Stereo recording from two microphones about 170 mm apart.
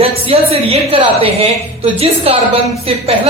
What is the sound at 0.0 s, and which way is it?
A woman's voice, 35° right (ahead or behind).